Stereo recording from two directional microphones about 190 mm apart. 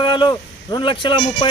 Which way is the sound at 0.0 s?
25° left (ahead or behind).